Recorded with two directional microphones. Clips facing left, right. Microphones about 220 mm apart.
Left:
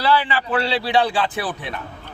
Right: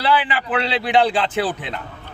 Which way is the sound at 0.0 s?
15° right (ahead or behind).